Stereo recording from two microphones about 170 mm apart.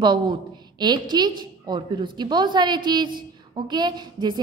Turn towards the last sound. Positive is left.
turn(degrees=-25)  # may be behind; listen again after turning